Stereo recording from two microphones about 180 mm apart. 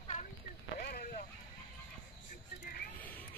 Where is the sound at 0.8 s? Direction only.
55° left (ahead or behind).